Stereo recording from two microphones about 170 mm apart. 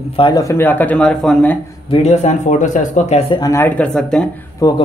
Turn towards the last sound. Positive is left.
turn(degrees=20)  # may be behind; listen again after turning